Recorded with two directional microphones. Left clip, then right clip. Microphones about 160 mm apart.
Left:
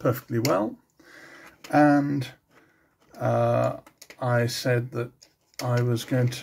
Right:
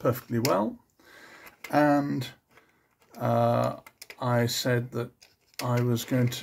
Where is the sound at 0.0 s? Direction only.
15° right (ahead or behind).